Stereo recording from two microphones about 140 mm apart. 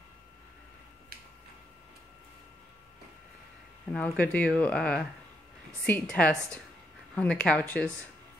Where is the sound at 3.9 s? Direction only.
10° left (ahead or behind).